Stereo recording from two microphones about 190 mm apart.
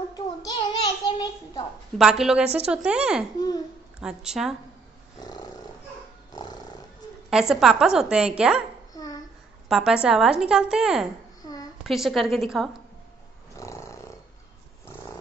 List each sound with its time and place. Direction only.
0.1 s a sound: 20° left (ahead or behind)
2.0 s a woman's voice: centre (ahead or behind)
3.3 s speech: 20° left (ahead or behind)
4.0 s a woman's voice: 5° right (ahead or behind)
7.2 s a woman's voice: centre (ahead or behind)
8.9 s a sound: 20° left (ahead or behind)
9.7 s a woman's voice: 5° right (ahead or behind)
13.6 s roar: 15° left (ahead or behind)